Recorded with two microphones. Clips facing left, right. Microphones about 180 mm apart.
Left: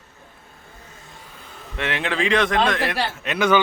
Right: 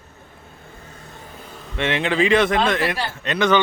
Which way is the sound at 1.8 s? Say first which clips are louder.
Right 4 dB; centre (ahead or behind).